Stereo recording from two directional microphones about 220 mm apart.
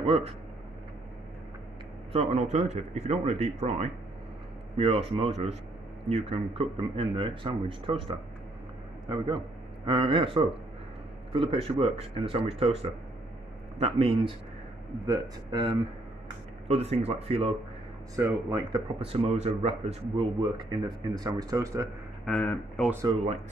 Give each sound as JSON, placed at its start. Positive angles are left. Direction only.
{"t": 0.0, "sound": "speech", "side_deg": -25}
{"t": 2.1, "sound": "speech", "side_deg": -30}
{"t": 9.8, "sound": "speech", "side_deg": -20}
{"t": 13.7, "sound": "speech", "side_deg": -25}
{"t": 18.1, "sound": "speech", "side_deg": -15}
{"t": 22.2, "sound": "speech", "side_deg": 5}
{"t": 23.0, "sound": "speech", "side_deg": -30}